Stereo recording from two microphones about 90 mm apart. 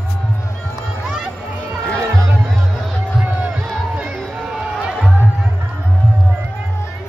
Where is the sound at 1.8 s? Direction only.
10° left (ahead or behind).